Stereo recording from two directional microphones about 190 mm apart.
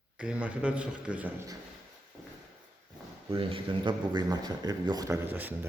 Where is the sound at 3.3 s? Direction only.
25° right (ahead or behind).